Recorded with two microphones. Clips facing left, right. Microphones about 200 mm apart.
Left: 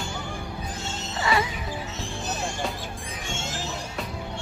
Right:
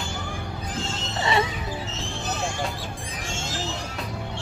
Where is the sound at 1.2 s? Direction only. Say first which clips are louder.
Right 1 dB; 25° right (ahead or behind).